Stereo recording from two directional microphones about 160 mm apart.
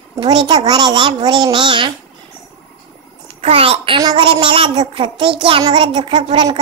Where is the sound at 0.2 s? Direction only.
30° right (ahead or behind).